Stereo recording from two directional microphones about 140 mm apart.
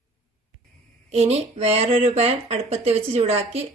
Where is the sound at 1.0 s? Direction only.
50° right (ahead or behind).